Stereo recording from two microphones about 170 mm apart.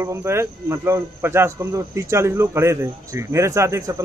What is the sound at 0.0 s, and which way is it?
A man's voice, 15° right (ahead or behind).